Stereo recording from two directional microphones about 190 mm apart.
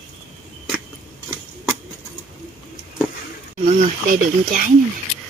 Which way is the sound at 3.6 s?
45° right (ahead or behind).